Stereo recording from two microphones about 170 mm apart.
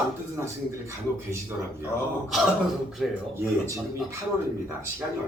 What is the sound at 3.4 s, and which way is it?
Speech, 15° right (ahead or behind).